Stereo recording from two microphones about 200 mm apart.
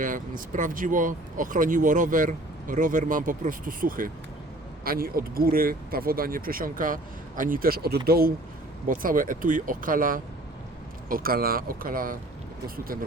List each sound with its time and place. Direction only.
0.0 s speech: 40° right (ahead or behind)